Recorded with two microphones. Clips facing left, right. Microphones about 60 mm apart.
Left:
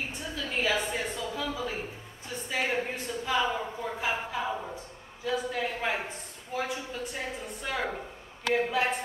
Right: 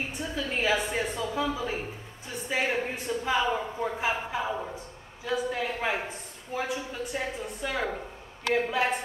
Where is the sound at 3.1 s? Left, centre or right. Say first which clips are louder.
Right 4 dB; centre.